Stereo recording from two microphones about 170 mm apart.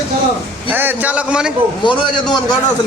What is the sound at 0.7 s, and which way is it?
Speech, 10° right (ahead or behind).